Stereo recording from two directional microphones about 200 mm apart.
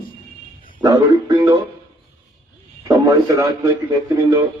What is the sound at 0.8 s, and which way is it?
Speech, 20° right (ahead or behind).